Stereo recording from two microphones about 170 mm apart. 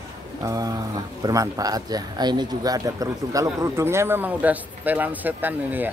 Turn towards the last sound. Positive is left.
turn(degrees=-10)  # may be behind; listen again after turning